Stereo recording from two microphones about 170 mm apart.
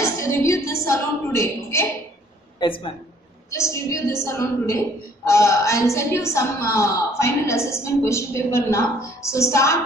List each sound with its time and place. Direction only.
0.0 s a woman's voice: 20° left (ahead or behind)
2.6 s speech: 30° left (ahead or behind)
3.4 s a woman's voice: 15° left (ahead or behind)